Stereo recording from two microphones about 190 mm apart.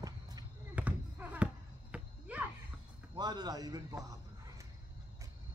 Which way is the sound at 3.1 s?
20° right (ahead or behind).